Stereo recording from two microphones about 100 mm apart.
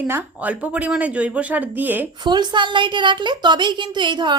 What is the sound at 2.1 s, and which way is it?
A woman's voice, 45° right (ahead or behind).